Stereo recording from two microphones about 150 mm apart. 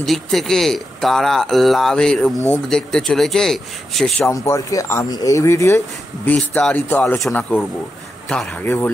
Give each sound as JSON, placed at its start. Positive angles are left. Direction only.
{"t": 0.0, "sound": "speech", "side_deg": 0}
{"t": 4.3, "sound": "speech", "side_deg": 20}